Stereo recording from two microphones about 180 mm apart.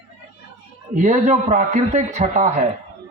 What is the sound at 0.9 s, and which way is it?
A man's voice, 40° right (ahead or behind).